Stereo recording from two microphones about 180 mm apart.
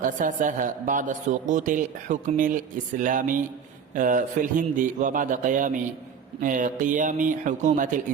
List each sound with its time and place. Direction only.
0.0 s a man's voice: 45° right (ahead or behind)